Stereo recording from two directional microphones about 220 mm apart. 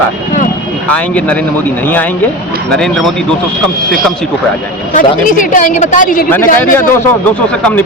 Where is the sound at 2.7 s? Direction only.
5° left (ahead or behind).